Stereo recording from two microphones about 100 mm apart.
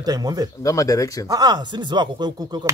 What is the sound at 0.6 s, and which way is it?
Speech, 35° left (ahead or behind).